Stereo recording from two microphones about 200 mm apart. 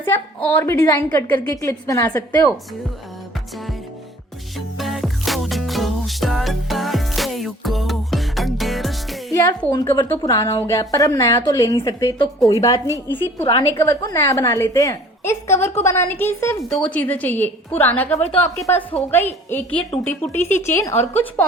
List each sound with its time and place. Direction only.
0.0 s a woman's voice: 10° left (ahead or behind)
4.5 s music: centre (ahead or behind)
9.3 s a woman's voice: 15° left (ahead or behind)
20.9 s a woman's voice: 35° left (ahead or behind)